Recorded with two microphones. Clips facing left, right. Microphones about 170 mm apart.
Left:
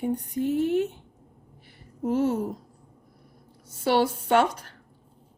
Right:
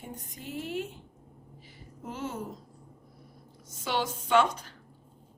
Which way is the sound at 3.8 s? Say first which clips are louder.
Left 9 dB; 60° left (ahead or behind).